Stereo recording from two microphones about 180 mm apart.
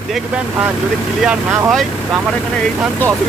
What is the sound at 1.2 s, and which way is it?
Speech, centre (ahead or behind).